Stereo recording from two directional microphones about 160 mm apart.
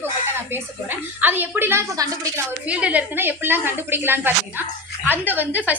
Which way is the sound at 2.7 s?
10° right (ahead or behind).